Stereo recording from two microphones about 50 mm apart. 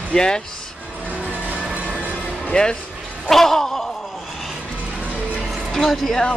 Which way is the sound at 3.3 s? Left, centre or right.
Centre.